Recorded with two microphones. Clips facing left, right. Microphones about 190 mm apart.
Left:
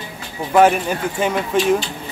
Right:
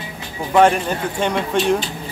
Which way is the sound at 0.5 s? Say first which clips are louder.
Left 1 dB; 5° left (ahead or behind).